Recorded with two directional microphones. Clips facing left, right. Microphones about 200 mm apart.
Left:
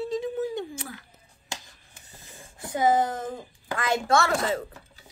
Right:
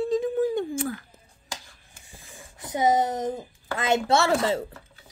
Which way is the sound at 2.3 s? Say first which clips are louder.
Right 1 dB; 20° right (ahead or behind).